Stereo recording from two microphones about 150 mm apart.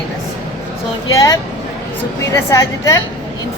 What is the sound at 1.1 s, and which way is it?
Speech, 20° left (ahead or behind).